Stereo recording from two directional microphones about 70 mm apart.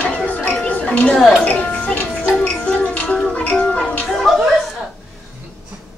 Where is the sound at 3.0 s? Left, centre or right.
Centre.